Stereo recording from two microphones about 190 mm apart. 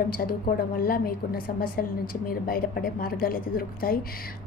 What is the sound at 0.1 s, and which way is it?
A woman's voice, 50° left (ahead or behind).